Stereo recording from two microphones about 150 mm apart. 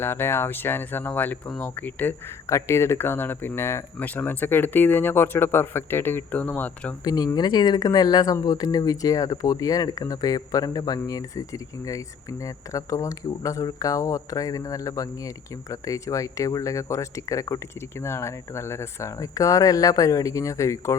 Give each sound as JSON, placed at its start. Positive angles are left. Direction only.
{"t": 0.0, "sound": "speech", "side_deg": 15}
{"t": 7.0, "sound": "speech", "side_deg": 25}